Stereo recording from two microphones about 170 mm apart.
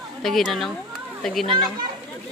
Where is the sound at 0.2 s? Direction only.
Centre (ahead or behind).